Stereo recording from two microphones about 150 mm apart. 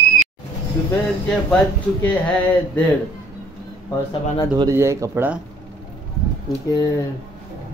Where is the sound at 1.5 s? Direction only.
10° left (ahead or behind).